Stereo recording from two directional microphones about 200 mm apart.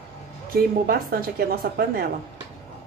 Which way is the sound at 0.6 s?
50° right (ahead or behind).